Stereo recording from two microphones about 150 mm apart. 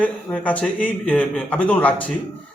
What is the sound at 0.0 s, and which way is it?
A man's voice, 10° left (ahead or behind).